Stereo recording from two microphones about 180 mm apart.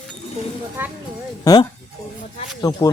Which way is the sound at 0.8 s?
10° right (ahead or behind).